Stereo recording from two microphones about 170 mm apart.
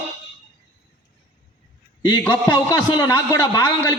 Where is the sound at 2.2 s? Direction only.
10° left (ahead or behind).